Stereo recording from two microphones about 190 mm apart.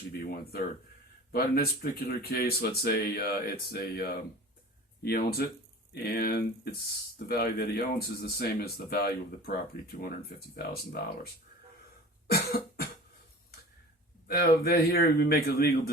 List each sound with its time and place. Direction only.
0.2 s speech: 50° left (ahead or behind)
12.3 s speech: 55° left (ahead or behind)
14.3 s speech: 55° left (ahead or behind)